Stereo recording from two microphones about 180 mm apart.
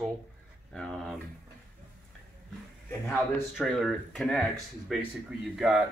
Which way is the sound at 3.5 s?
Centre (ahead or behind).